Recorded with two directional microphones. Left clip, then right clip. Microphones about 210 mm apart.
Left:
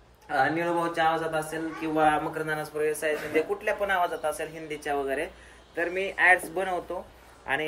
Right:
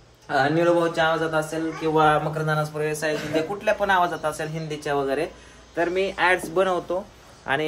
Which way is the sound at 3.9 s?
15° right (ahead or behind).